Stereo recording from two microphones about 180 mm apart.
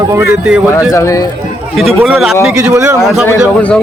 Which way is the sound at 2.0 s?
5° right (ahead or behind).